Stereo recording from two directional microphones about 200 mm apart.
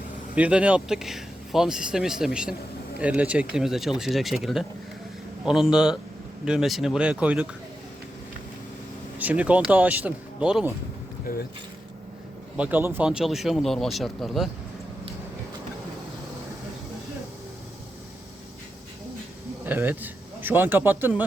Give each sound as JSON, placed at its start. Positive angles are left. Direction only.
{"t": 0.3, "sound": "speech", "side_deg": -5}
{"t": 9.1, "sound": "speech", "side_deg": -10}
{"t": 11.3, "sound": "speech", "side_deg": 50}
{"t": 12.5, "sound": "speech", "side_deg": -10}
{"t": 19.6, "sound": "speech", "side_deg": -10}